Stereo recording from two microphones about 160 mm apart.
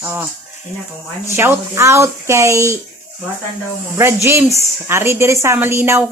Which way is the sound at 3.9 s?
15° right (ahead or behind).